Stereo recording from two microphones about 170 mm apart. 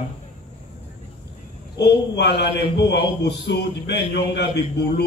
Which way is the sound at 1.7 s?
75° left (ahead or behind).